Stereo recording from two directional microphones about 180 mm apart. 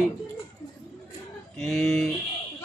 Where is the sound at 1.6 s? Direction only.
Centre (ahead or behind).